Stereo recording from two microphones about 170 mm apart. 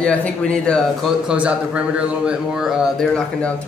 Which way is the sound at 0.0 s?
5° left (ahead or behind).